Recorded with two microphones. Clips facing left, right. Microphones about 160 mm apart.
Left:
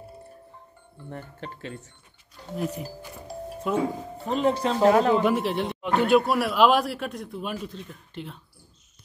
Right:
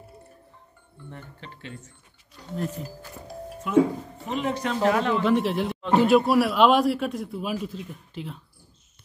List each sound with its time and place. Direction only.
0.9 s speech: 40° left (ahead or behind)
2.5 s speech: 10° left (ahead or behind)
3.7 s speech: 35° left (ahead or behind)
5.2 s a man's voice: centre (ahead or behind)